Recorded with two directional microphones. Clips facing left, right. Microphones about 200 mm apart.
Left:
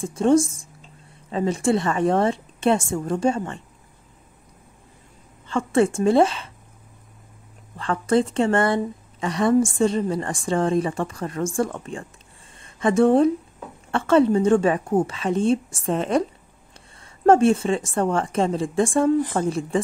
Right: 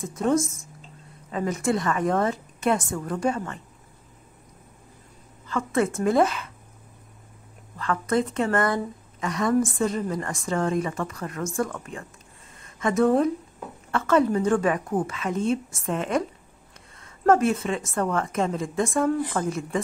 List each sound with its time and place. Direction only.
0.0 s a woman's voice: 30° left (ahead or behind)
5.5 s a woman's voice: 30° left (ahead or behind)
7.7 s a woman's voice: 30° left (ahead or behind)
12.5 s a sound: 30° left (ahead or behind)
13.9 s a woman's voice: 30° left (ahead or behind)